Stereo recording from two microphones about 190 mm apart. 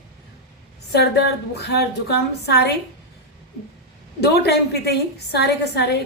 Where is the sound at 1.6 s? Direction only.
60° left (ahead or behind).